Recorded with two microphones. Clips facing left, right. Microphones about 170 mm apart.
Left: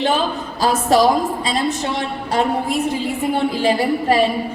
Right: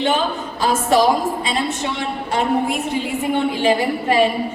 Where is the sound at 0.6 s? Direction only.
40° left (ahead or behind).